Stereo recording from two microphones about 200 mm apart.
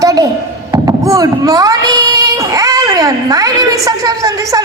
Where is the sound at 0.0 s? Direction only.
15° right (ahead or behind).